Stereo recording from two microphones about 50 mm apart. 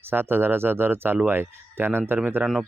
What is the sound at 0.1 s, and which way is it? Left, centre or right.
Speech, right.